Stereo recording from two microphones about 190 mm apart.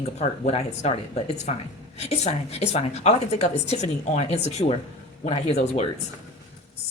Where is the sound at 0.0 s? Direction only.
35° left (ahead or behind).